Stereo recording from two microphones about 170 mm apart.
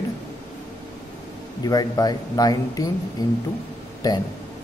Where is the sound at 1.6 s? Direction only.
20° left (ahead or behind).